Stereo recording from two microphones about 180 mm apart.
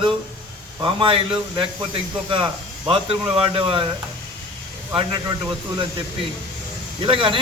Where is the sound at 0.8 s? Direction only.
30° right (ahead or behind).